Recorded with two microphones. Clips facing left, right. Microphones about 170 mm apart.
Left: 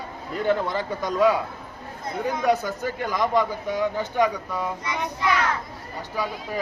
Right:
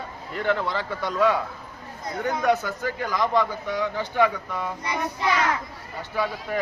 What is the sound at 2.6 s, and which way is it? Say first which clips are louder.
A man's voice: left 1 dB; 20° left (ahead or behind).